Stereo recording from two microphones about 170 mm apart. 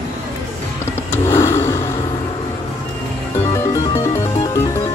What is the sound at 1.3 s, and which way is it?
Vehicle, 15° left (ahead or behind).